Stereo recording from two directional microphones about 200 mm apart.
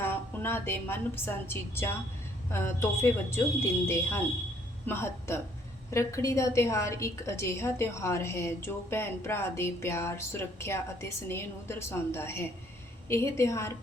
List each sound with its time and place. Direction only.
0.0 s a woman's voice: 10° left (ahead or behind)